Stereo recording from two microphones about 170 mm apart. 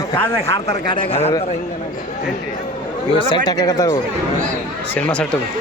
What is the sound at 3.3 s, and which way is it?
Speech, 25° left (ahead or behind).